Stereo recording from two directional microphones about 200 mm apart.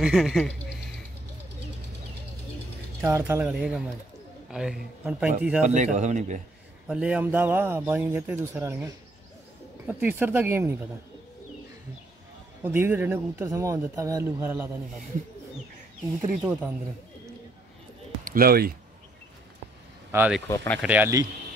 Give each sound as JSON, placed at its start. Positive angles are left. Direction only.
{"t": 0.0, "sound": "speech", "side_deg": 0}
{"t": 3.0, "sound": "speech", "side_deg": -15}
{"t": 5.7, "sound": "a man's voice", "side_deg": -35}
{"t": 6.9, "sound": "speech", "side_deg": -5}
{"t": 12.6, "sound": "speech", "side_deg": -10}
{"t": 16.2, "sound": "speech", "side_deg": -10}
{"t": 18.2, "sound": "speech", "side_deg": -45}
{"t": 20.1, "sound": "speech", "side_deg": -5}
{"t": 20.4, "sound": "speech", "side_deg": 10}
{"t": 20.8, "sound": "speech", "side_deg": -10}